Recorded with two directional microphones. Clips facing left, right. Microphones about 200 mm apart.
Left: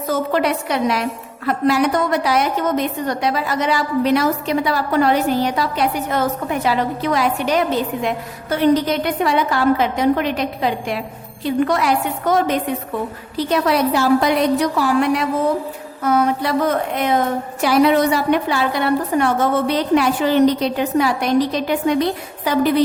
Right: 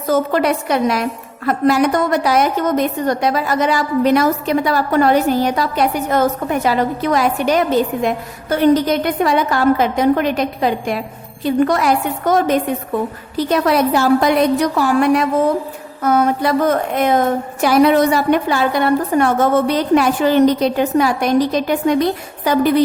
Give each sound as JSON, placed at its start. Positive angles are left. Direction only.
{"t": 0.1, "sound": "a woman's voice", "side_deg": -45}